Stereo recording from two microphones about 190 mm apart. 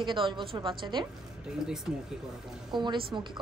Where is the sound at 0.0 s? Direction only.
25° right (ahead or behind).